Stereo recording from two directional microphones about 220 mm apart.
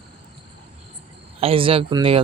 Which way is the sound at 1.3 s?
25° right (ahead or behind).